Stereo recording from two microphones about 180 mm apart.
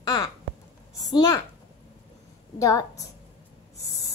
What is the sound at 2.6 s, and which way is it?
Speech, 15° left (ahead or behind).